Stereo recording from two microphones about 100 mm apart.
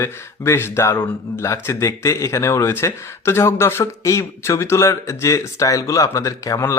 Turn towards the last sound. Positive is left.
turn(degrees=30)  # may be behind; listen again after turning